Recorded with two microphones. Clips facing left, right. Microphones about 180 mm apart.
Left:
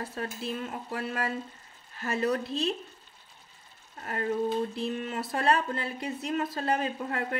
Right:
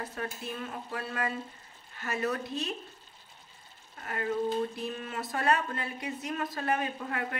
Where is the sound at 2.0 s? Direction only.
30° left (ahead or behind).